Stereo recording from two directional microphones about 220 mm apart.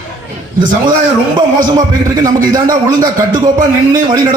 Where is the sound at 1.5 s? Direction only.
20° right (ahead or behind).